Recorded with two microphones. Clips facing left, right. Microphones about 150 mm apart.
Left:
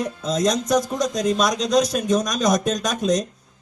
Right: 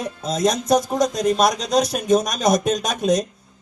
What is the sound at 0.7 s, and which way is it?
A man's voice, 60° right (ahead or behind).